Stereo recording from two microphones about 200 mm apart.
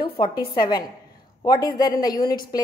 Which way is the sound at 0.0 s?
25° left (ahead or behind).